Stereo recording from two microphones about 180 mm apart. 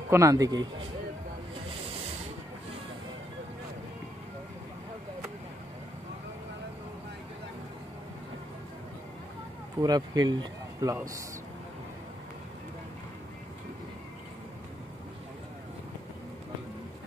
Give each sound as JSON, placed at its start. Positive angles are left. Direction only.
{"t": 0.1, "sound": "speech", "side_deg": -15}
{"t": 9.8, "sound": "speech", "side_deg": -20}